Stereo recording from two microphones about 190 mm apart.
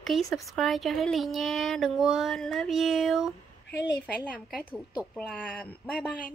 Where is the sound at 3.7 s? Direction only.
65° left (ahead or behind).